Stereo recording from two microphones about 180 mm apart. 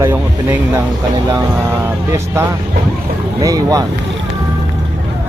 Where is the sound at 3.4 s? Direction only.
20° right (ahead or behind).